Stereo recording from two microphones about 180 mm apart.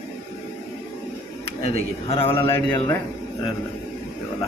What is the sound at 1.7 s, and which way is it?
Speech, 35° left (ahead or behind).